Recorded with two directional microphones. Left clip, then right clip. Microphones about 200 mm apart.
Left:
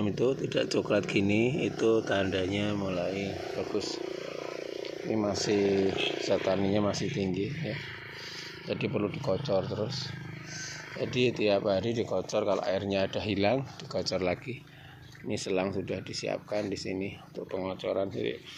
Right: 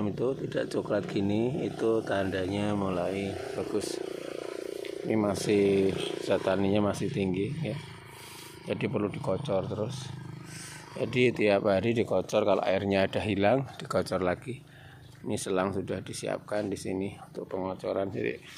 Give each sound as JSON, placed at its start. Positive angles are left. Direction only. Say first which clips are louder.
{"t": 0.0, "sound": "speech", "louder": "left 2 dB", "side_deg": 10}
{"t": 2.8, "sound": "speech", "louder": "right 1 dB", "side_deg": -15}
{"t": 4.3, "sound": "vehicle", "louder": "even", "side_deg": -50}
{"t": 5.0, "sound": "speech", "louder": "right 2 dB", "side_deg": -20}
{"t": 5.9, "sound": "speech", "louder": "left 1 dB", "side_deg": -55}
{"t": 6.2, "sound": "speech", "louder": "right 3 dB", "side_deg": -10}
{"t": 11.0, "sound": "speech", "louder": "right 2 dB", "side_deg": -15}
{"t": 13.3, "sound": "speech", "louder": "right 1 dB", "side_deg": -10}